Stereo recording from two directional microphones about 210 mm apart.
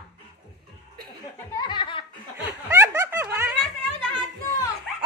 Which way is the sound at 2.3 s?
15° right (ahead or behind).